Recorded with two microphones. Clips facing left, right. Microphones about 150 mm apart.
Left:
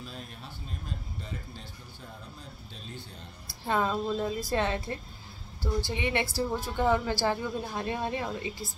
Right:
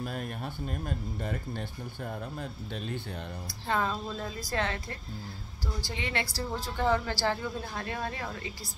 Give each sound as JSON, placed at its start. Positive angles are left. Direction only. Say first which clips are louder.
{"t": 0.0, "sound": "speech", "louder": "right 8 dB", "side_deg": -55}
{"t": 3.6, "sound": "a woman's voice", "louder": "left 3 dB", "side_deg": 15}